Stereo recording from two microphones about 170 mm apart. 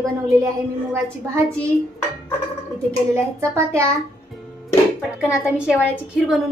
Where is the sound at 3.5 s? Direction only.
15° right (ahead or behind).